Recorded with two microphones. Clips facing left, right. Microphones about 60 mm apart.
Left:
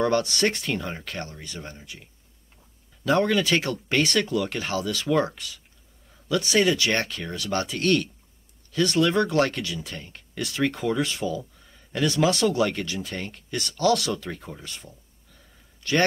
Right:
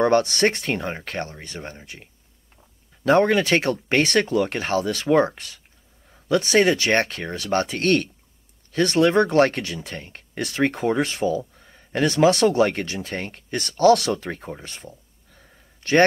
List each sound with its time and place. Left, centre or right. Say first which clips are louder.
0.0 s speech: right 4 dB; right
3.1 s speech: right 4 dB; right